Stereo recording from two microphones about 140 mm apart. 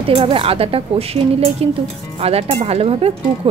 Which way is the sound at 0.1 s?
40° right (ahead or behind).